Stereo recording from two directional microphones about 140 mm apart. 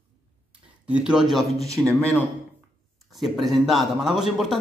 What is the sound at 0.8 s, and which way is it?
A man's voice, 10° right (ahead or behind).